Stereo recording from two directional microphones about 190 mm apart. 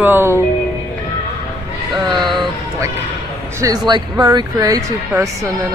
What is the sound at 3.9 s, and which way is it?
Speech, 20° right (ahead or behind).